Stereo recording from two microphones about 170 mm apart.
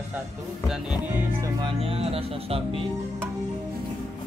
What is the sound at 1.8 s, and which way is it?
Music, 35° right (ahead or behind).